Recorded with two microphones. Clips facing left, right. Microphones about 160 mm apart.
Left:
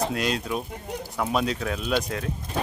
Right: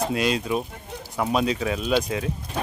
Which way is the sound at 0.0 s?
Centre (ahead or behind).